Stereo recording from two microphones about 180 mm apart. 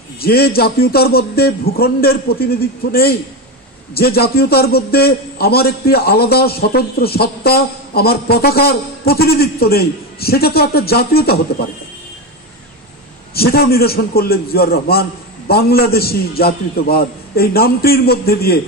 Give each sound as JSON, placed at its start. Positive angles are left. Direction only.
{"t": 0.2, "sound": "a man's voice", "side_deg": 60}
{"t": 13.3, "sound": "a man's voice", "side_deg": 60}